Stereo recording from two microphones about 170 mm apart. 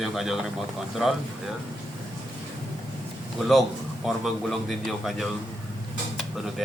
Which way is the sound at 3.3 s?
Centre (ahead or behind).